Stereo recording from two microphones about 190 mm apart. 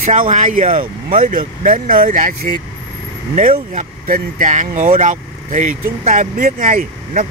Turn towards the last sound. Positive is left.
turn(degrees=-45)  # may be behind; listen again after turning